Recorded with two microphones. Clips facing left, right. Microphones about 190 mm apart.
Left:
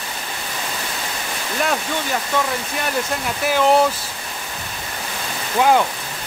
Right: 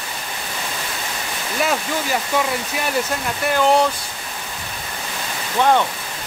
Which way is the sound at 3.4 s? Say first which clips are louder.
Left 1 dB; centre (ahead or behind).